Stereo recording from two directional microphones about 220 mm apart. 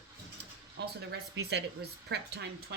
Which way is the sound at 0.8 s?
50° right (ahead or behind).